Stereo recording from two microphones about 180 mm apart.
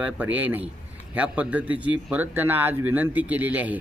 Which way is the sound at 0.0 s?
10° right (ahead or behind).